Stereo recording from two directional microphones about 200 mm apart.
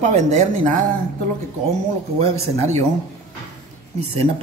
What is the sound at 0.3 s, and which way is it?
Speech, 35° right (ahead or behind).